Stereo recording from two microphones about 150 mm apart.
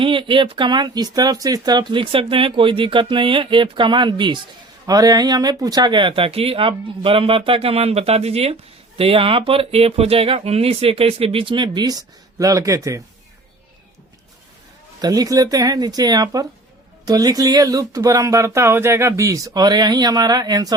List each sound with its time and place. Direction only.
0.0 s speech: 35° right (ahead or behind)
15.0 s speech: 25° right (ahead or behind)